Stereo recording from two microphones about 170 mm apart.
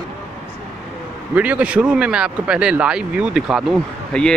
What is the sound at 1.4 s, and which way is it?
Speech, 10° right (ahead or behind).